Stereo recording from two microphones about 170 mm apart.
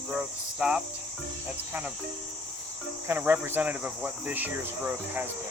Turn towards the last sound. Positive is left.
turn(degrees=-10)  # may be behind; listen again after turning